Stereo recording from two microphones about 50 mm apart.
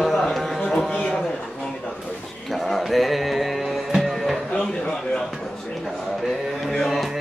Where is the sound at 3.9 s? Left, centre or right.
Centre.